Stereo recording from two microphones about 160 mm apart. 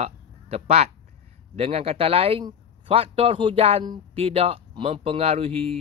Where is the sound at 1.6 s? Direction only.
40° right (ahead or behind).